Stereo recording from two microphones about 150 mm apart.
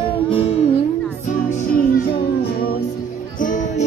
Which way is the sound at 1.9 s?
90° left.